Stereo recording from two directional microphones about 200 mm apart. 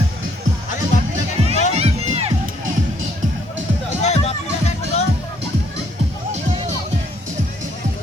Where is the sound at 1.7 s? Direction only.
30° right (ahead or behind).